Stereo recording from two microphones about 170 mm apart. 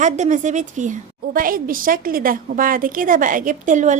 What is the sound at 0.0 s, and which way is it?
A woman's voice, 45° right (ahead or behind).